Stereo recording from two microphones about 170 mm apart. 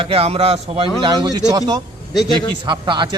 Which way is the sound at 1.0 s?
25° right (ahead or behind).